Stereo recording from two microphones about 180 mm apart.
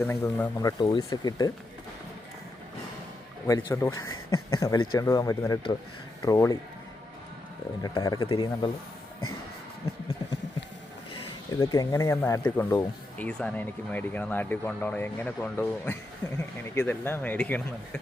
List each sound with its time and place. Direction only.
0.0 s speech: 10° left (ahead or behind)
3.4 s speech: 20° left (ahead or behind)
7.8 s speech: 20° left (ahead or behind)
11.6 s speech: 20° left (ahead or behind)